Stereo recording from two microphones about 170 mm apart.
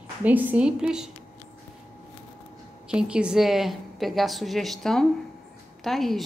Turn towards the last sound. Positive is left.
turn(degrees=0)  # may be behind; listen again after turning